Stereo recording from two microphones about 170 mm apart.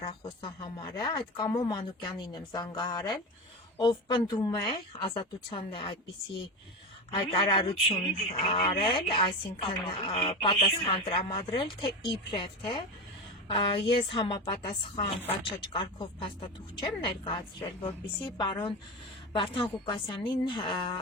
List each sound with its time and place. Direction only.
0.2 s speech: 25° left (ahead or behind)
7.1 s speech: 30° left (ahead or behind)
19.4 s speech: 30° left (ahead or behind)